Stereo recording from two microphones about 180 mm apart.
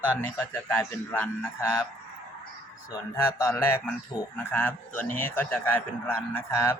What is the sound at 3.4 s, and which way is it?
Speech, 15° left (ahead or behind).